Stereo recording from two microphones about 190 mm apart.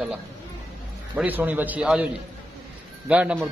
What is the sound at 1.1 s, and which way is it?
Speech, 10° right (ahead or behind).